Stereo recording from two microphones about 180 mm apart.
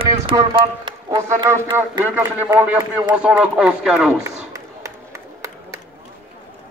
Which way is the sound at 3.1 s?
5° right (ahead or behind).